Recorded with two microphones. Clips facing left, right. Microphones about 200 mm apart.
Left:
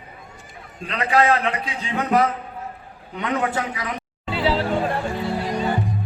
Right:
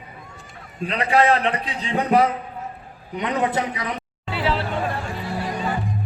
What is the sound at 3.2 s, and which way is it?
Speech, 20° right (ahead or behind).